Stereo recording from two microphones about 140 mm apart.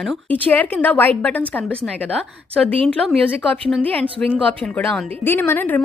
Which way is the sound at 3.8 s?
10° left (ahead or behind).